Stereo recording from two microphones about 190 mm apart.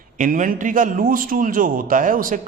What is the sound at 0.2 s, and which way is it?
A man's voice, 45° right (ahead or behind).